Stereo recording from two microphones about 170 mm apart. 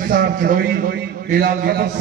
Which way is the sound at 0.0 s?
55° right (ahead or behind).